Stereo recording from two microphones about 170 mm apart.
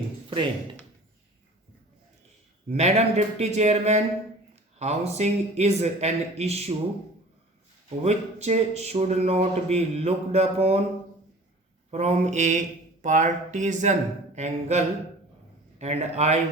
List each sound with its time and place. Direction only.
2.6 s speech: 40° right (ahead or behind)
8.0 s speech: 40° right (ahead or behind)
11.9 s speech: 40° right (ahead or behind)